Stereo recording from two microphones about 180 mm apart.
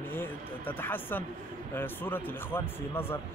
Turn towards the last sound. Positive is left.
turn(degrees=10)  # may be behind; listen again after turning